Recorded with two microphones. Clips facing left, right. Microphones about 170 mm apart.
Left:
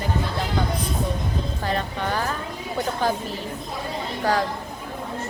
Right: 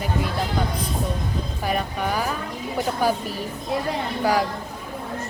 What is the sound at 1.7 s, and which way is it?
Speech, 10° right (ahead or behind).